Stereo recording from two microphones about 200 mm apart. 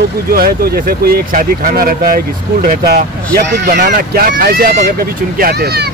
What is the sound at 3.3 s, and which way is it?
Speech, 55° right (ahead or behind).